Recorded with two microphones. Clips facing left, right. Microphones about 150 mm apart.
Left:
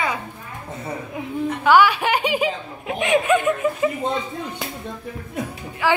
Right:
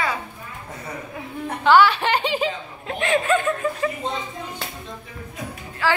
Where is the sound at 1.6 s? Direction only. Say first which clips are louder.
Even; 10° left (ahead or behind).